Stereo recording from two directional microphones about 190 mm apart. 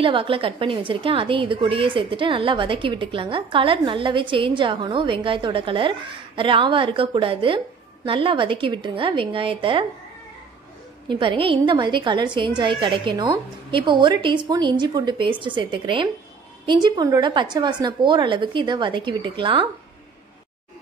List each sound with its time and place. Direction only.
0.0 s a woman's voice: 30° right (ahead or behind)
11.1 s a woman's voice: 25° right (ahead or behind)